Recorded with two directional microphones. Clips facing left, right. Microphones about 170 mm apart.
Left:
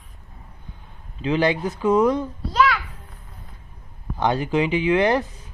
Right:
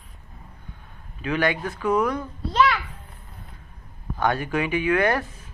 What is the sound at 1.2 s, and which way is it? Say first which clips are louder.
Speech: left 3 dB; 25° left (ahead or behind).